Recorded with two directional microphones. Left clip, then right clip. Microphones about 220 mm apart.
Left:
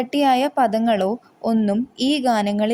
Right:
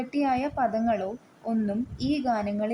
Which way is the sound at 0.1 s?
20° left (ahead or behind).